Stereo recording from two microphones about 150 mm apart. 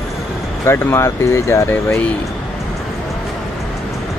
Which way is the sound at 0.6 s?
15° left (ahead or behind).